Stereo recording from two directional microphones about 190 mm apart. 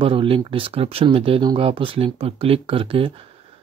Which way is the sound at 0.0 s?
30° right (ahead or behind).